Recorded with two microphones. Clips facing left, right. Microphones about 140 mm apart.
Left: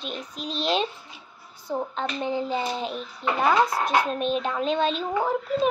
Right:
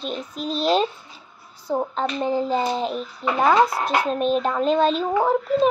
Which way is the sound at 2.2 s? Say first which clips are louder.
Right 5 dB; 40° right (ahead or behind).